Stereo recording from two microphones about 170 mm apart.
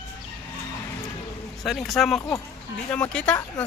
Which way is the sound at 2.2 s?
20° left (ahead or behind).